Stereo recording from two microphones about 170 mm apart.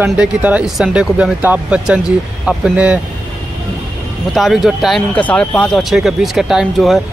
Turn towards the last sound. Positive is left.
turn(degrees=0)  # may be behind; listen again after turning